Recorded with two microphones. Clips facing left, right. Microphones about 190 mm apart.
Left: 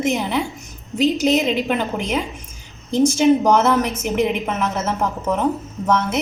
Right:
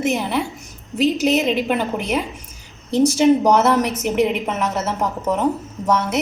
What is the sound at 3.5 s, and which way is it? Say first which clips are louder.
A woman's voice: right 1 dB; centre (ahead or behind).